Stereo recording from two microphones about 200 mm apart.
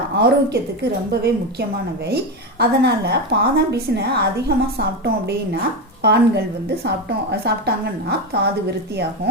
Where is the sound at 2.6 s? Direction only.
55° right (ahead or behind).